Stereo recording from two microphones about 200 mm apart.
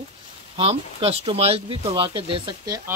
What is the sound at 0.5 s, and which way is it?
Speech, 30° right (ahead or behind).